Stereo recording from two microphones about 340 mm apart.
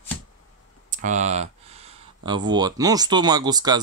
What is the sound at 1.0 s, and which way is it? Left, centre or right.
Speech, right.